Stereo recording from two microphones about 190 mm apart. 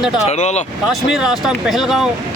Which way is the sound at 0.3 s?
35° left (ahead or behind).